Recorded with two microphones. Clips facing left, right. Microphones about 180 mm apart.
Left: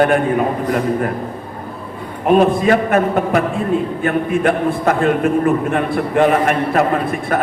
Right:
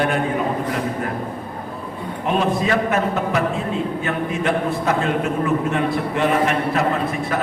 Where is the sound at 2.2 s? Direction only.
50° left (ahead or behind).